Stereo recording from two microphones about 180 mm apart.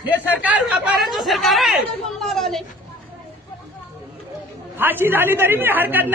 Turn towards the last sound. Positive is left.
turn(degrees=-10)  # may be behind; listen again after turning